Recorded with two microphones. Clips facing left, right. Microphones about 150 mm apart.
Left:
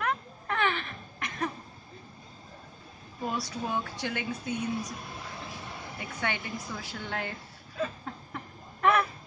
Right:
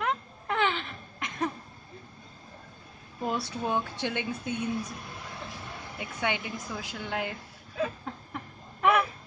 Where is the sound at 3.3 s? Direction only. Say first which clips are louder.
Right 3 dB; 25° right (ahead or behind).